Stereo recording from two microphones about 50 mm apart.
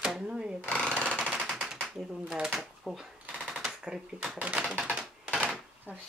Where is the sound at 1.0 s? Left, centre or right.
Right.